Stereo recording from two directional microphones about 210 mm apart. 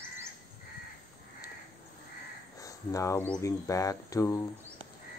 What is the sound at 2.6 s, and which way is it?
Speech, 15° left (ahead or behind).